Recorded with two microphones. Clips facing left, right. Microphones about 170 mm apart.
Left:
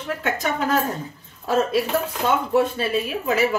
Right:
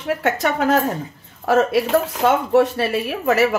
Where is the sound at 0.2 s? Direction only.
75° right (ahead or behind).